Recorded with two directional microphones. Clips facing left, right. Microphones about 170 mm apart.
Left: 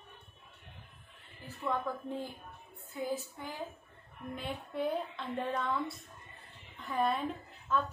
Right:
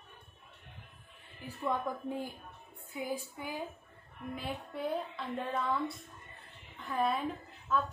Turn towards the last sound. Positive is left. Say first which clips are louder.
# even
turn(degrees=0)  # may be behind; listen again after turning